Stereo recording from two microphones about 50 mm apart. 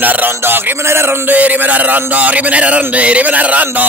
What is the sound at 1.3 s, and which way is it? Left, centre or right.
A man's voice, right.